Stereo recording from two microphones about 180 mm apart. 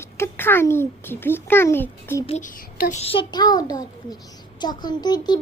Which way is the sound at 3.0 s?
30° left (ahead or behind).